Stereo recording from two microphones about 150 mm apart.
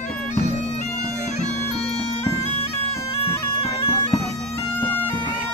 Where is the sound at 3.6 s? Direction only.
40° left (ahead or behind).